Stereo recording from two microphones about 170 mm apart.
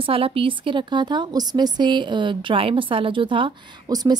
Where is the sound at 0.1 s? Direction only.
35° right (ahead or behind).